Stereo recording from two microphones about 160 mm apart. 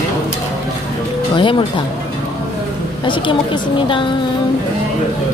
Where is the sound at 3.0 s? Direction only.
30° left (ahead or behind).